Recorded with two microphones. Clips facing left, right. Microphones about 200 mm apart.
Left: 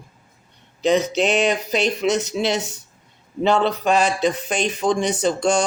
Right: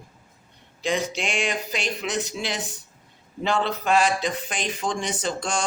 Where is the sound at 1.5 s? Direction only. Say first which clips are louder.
Left 8 dB; 20° left (ahead or behind).